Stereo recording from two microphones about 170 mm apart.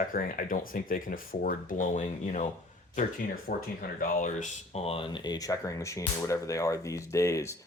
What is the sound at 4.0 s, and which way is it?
Speech, 45° left (ahead or behind).